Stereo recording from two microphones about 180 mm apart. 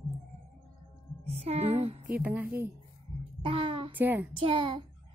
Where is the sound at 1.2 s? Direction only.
35° right (ahead or behind).